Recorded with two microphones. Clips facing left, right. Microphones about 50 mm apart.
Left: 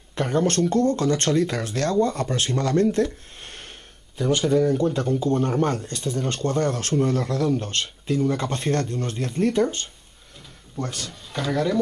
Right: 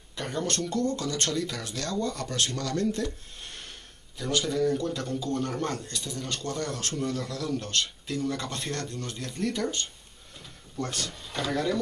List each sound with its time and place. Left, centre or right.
0.1 s speech: left
10.8 s speech: centre